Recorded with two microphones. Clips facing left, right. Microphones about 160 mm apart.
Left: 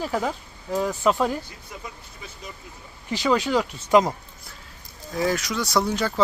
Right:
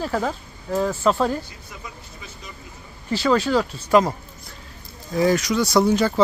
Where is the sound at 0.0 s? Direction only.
10° left (ahead or behind).